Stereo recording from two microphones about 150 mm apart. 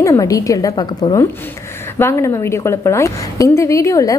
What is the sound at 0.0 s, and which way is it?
A woman's voice, 20° left (ahead or behind).